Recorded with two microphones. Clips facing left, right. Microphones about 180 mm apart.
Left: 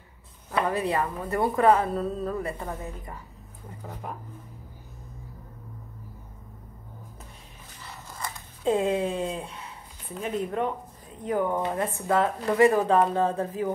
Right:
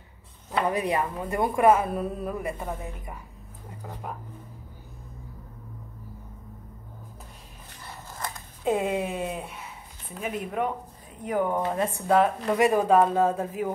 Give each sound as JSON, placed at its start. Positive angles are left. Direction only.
{"t": 0.5, "sound": "a woman's voice", "side_deg": -15}
{"t": 8.6, "sound": "a woman's voice", "side_deg": -10}